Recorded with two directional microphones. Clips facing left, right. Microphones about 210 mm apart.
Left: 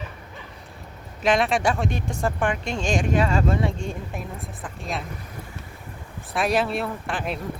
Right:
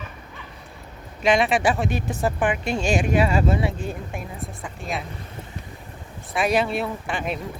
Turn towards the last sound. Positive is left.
turn(degrees=0)  # may be behind; listen again after turning